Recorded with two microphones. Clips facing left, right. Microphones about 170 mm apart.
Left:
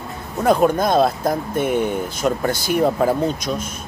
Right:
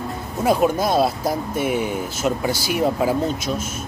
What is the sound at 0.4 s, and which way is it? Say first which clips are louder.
Speech: left 2 dB; 5° right (ahead or behind).